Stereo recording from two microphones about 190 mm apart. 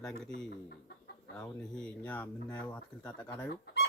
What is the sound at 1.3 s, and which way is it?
Speech, 5° left (ahead or behind).